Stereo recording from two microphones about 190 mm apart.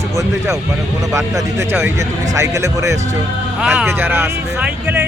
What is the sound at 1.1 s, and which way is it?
Speech, 15° right (ahead or behind).